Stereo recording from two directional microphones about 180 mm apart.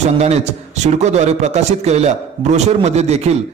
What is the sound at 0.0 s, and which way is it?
A man's voice, 40° right (ahead or behind).